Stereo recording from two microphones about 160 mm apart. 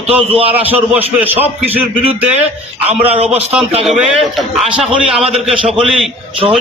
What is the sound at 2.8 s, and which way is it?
A man's voice, 10° right (ahead or behind).